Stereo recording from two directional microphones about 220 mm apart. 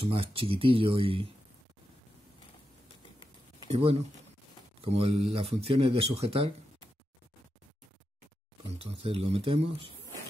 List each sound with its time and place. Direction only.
0.0 s speech: 25° right (ahead or behind)
3.7 s speech: 30° right (ahead or behind)
8.7 s speech: 25° right (ahead or behind)